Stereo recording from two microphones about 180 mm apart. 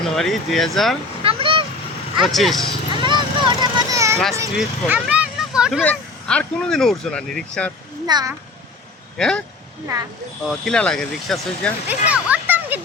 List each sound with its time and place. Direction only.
0.0 s speech: centre (ahead or behind)
1.2 s a sound: 30° right (ahead or behind)
2.2 s speech: centre (ahead or behind)
2.9 s vehicle: 25° right (ahead or behind)
4.5 s speech: 5° right (ahead or behind)
5.8 s speech: 5° left (ahead or behind)
8.0 s a child's voice: 20° right (ahead or behind)
9.1 s speech: 5° left (ahead or behind)
10.6 s speech: 5° left (ahead or behind)
11.9 s a child's voice: 5° right (ahead or behind)